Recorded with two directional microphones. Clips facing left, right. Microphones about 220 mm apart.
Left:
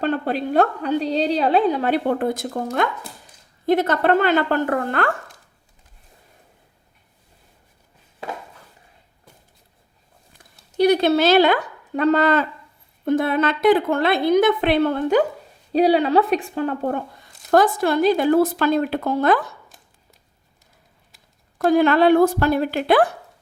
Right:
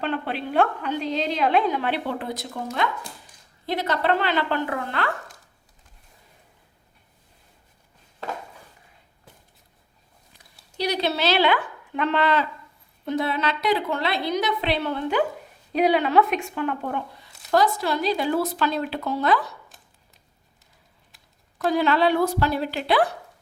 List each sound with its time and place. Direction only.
0.0 s a woman's voice: 40° left (ahead or behind)
10.8 s speech: 50° left (ahead or behind)
15.7 s speech: 35° left (ahead or behind); by 19.5 s 50° left (ahead or behind)
21.6 s speech: 50° left (ahead or behind)